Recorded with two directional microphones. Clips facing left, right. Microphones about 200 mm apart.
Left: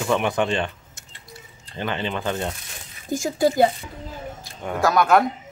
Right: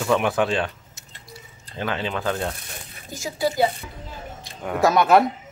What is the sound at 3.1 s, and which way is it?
Speech, 50° left (ahead or behind).